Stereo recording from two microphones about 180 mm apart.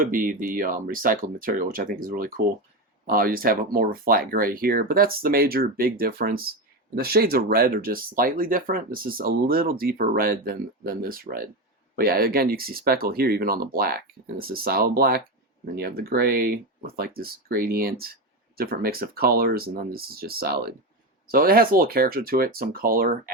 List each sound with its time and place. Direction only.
0.0 s speech: 50° right (ahead or behind)